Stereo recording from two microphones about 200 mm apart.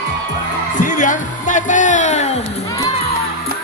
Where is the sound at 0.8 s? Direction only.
40° left (ahead or behind).